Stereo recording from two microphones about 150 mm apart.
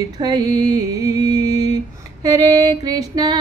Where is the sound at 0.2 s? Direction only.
25° right (ahead or behind).